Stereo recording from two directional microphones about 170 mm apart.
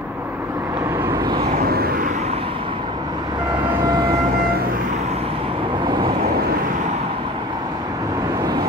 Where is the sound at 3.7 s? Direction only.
20° right (ahead or behind).